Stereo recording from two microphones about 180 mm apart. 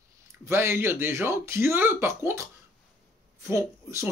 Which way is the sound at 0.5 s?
10° right (ahead or behind).